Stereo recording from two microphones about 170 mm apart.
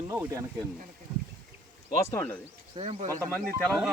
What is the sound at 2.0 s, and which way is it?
Speech, 15° left (ahead or behind).